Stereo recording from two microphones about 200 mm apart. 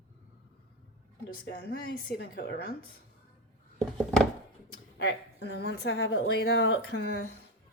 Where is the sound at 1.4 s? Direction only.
50° left (ahead or behind).